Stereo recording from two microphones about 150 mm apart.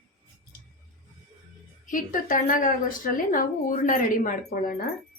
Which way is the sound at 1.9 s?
65° left (ahead or behind).